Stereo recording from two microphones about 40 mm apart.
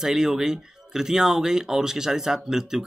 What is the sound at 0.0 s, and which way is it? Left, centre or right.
Speech, centre.